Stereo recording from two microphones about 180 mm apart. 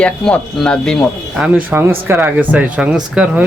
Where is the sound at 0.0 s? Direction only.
5° left (ahead or behind).